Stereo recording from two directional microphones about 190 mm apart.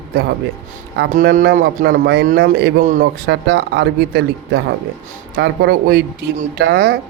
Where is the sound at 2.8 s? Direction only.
40° right (ahead or behind).